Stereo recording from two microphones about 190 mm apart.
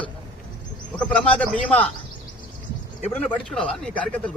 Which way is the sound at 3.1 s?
5° left (ahead or behind).